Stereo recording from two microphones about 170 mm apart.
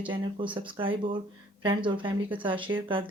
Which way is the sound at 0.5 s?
30° right (ahead or behind).